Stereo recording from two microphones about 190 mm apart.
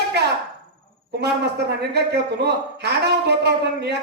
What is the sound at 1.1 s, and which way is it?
Speech, 60° right (ahead or behind).